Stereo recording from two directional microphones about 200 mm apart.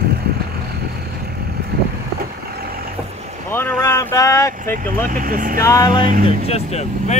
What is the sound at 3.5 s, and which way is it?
Speech, 10° left (ahead or behind).